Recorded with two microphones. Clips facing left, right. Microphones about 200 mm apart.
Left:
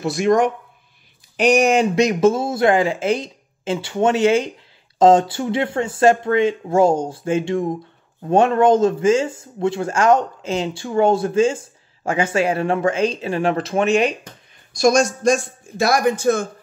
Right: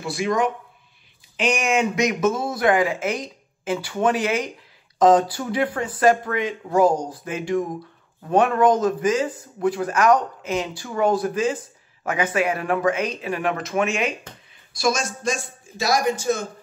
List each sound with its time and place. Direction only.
0.0 s speech: 45° left (ahead or behind)
14.7 s a man's voice: 45° left (ahead or behind)